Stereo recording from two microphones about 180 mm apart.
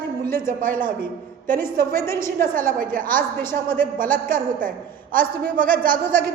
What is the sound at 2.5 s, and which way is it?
Speech, 50° right (ahead or behind).